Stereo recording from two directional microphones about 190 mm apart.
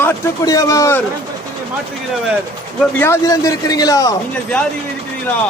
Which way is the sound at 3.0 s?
15° left (ahead or behind).